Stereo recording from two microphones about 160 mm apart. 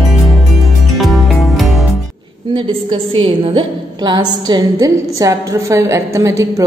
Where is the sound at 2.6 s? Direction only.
35° right (ahead or behind).